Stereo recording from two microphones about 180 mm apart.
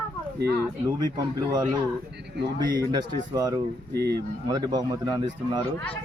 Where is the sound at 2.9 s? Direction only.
20° right (ahead or behind).